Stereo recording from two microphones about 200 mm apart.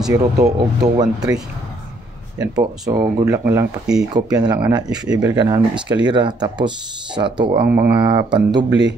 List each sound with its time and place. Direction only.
0.1 s speech: 15° right (ahead or behind)
4.1 s speech: 20° right (ahead or behind)
7.6 s speech: 10° right (ahead or behind)
8.0 s speech: 20° right (ahead or behind)